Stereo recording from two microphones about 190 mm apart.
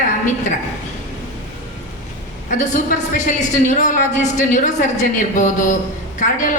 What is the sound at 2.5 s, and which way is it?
A woman's voice, 40° left (ahead or behind).